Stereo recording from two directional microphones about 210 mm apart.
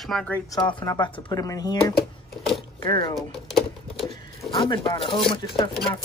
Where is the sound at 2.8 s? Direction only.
20° left (ahead or behind).